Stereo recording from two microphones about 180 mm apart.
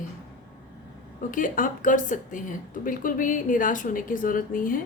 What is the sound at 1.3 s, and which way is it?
Speech, 50° left (ahead or behind).